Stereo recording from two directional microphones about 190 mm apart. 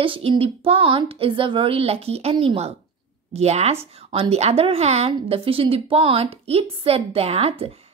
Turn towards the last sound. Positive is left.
turn(degrees=-30)  # may be behind; listen again after turning